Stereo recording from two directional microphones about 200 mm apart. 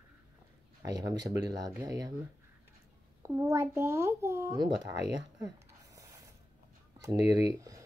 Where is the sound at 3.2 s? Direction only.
15° right (ahead or behind).